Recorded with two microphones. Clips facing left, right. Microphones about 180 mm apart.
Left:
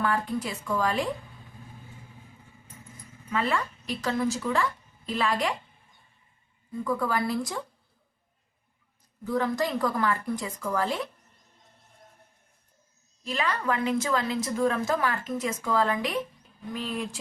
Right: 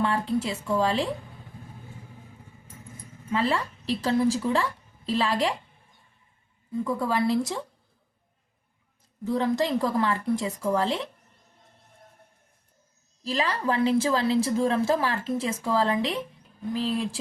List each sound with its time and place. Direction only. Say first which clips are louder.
0.0 s a woman's voice: right 2 dB; 25° right (ahead or behind)
3.2 s speech: right 2 dB; 30° right (ahead or behind)
6.8 s a woman's voice: right 2 dB; 25° right (ahead or behind)
9.2 s a woman's voice: right 2 dB; 25° right (ahead or behind)
13.2 s a woman's voice: right 2 dB; 30° right (ahead or behind)